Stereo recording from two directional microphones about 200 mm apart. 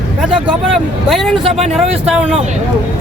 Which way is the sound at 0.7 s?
Centre (ahead or behind).